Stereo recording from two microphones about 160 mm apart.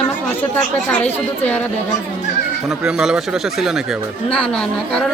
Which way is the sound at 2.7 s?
5° right (ahead or behind).